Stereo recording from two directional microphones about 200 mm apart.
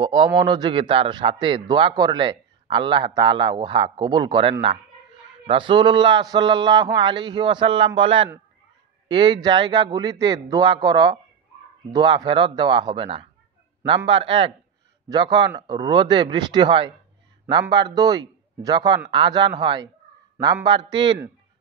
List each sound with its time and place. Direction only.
0.0 s a man's voice: 25° right (ahead or behind)